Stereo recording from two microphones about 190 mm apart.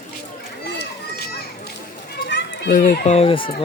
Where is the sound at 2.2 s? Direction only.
60° left (ahead or behind).